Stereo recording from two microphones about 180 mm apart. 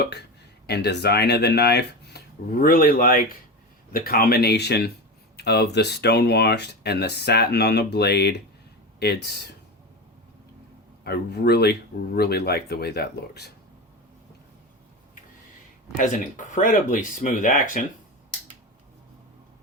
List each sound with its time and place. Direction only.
0.0 s speech: 70° left (ahead or behind)
11.0 s speech: 65° left (ahead or behind)
16.0 s speech: 45° left (ahead or behind)